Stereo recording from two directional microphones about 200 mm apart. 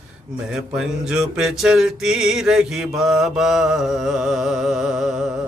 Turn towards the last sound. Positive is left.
turn(degrees=0)  # may be behind; listen again after turning